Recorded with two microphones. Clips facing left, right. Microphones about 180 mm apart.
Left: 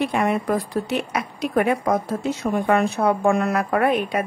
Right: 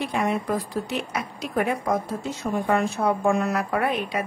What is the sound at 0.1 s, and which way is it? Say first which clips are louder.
A woman's voice: left 3 dB; 60° left (ahead or behind).